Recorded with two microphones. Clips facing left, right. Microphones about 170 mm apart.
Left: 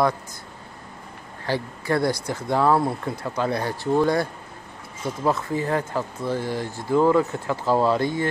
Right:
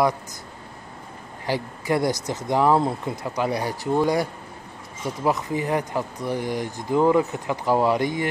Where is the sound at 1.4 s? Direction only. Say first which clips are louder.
Even; 15° right (ahead or behind).